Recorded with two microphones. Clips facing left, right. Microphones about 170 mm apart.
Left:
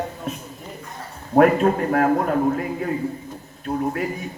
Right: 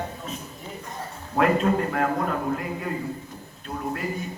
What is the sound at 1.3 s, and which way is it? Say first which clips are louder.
Speech: left 6 dB; 50° left (ahead or behind).